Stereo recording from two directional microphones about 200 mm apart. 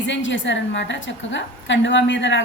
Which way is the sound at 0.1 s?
70° left (ahead or behind).